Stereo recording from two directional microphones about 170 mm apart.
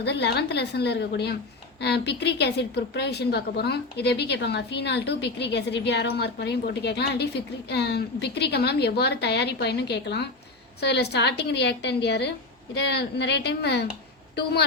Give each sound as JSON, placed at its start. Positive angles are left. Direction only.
{"t": 0.0, "sound": "a woman's voice", "side_deg": 80}